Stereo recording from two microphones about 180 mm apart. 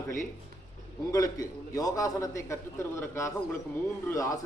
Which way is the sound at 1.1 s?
20° left (ahead or behind).